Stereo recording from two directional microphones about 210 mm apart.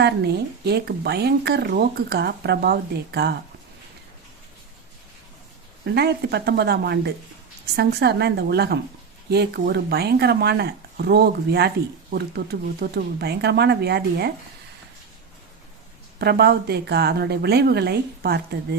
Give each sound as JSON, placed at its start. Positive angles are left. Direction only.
{"t": 0.0, "sound": "speech", "side_deg": -50}
{"t": 5.8, "sound": "speech", "side_deg": -50}
{"t": 16.1, "sound": "speech", "side_deg": -50}